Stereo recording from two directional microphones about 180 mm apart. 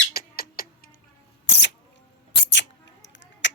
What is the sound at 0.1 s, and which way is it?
Cat, 55° left (ahead or behind).